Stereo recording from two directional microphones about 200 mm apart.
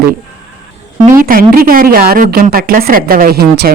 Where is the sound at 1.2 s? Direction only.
45° right (ahead or behind).